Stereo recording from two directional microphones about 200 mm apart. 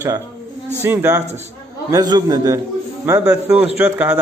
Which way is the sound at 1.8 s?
20° right (ahead or behind).